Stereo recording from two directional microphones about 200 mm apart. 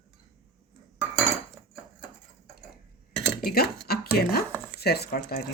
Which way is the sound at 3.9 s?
50° left (ahead or behind).